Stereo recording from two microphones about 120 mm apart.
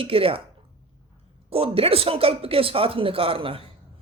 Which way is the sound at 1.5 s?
55° right (ahead or behind).